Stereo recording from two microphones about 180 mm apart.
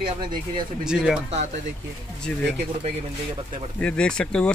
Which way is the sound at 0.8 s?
5° right (ahead or behind).